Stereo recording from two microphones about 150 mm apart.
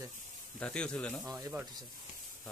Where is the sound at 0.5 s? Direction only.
5° left (ahead or behind).